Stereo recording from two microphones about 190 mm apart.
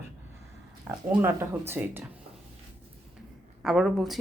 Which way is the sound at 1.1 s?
10° right (ahead or behind).